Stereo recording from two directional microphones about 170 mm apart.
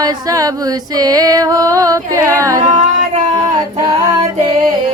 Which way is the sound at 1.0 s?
20° right (ahead or behind).